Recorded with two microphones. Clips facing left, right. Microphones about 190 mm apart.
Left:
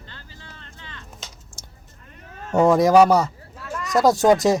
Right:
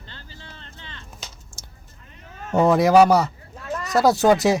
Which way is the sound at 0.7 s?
30° right (ahead or behind).